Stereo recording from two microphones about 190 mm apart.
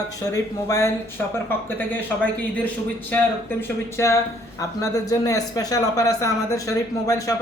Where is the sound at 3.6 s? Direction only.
15° left (ahead or behind).